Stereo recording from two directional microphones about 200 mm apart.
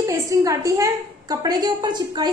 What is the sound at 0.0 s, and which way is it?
A woman's voice, 15° right (ahead or behind).